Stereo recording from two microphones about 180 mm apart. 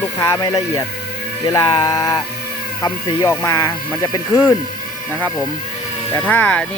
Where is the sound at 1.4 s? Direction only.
20° left (ahead or behind).